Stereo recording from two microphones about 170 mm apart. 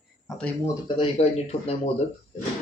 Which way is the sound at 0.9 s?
40° left (ahead or behind).